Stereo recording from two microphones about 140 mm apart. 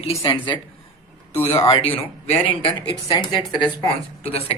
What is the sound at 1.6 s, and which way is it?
Speech, 45° left (ahead or behind).